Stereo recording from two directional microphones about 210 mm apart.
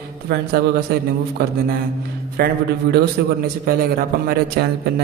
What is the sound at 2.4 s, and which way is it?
A man's voice, 50° right (ahead or behind).